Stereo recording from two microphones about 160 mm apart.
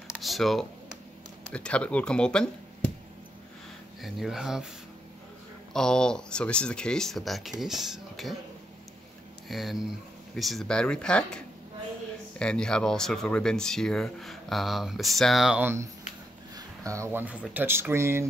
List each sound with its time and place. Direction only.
0.1 s speech: centre (ahead or behind)
4.0 s speech: centre (ahead or behind)
5.7 s speech: 5° left (ahead or behind)
9.5 s speech: centre (ahead or behind)
15.6 s speech: 15° right (ahead or behind)